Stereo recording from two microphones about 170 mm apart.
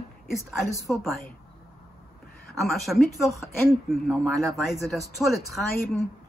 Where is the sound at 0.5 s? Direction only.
Centre (ahead or behind).